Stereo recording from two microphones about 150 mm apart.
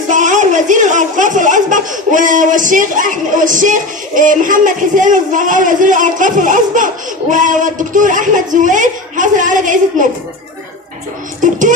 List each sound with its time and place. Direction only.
0.1 s speech: 55° right (ahead or behind)